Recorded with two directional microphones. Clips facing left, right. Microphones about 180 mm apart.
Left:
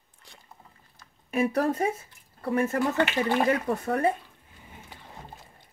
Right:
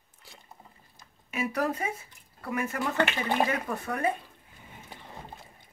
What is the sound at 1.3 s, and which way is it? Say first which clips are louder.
Speech: left 5 dB; 30° left (ahead or behind).